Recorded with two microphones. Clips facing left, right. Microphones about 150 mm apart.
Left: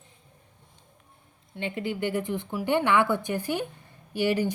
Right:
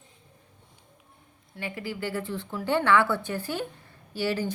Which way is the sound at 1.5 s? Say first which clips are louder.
Left 4 dB; 25° left (ahead or behind).